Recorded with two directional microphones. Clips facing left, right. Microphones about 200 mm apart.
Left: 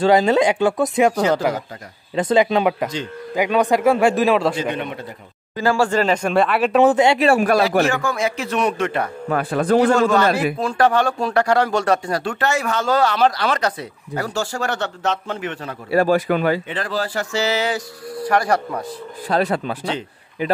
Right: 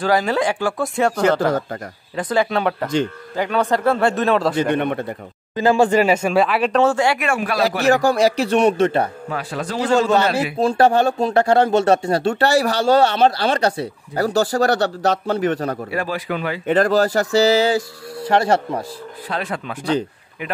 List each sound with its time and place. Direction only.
0.0 s a man's voice: 25° left (ahead or behind); by 4.6 s 5° left (ahead or behind)
4.7 s a man's voice: 55° right (ahead or behind)
5.6 s speech: 20° right (ahead or behind); by 6.8 s centre (ahead or behind)
6.8 s speech: 20° left (ahead or behind)
7.2 s speech: 45° left (ahead or behind)
7.8 s speech: 35° right (ahead or behind)
9.3 s speech: 55° left (ahead or behind)
10.6 s speech: 30° right (ahead or behind)
15.9 s speech: 40° left (ahead or behind)
16.6 s speech: 45° right (ahead or behind); by 18.9 s 25° right (ahead or behind)
19.2 s speech: 40° left (ahead or behind)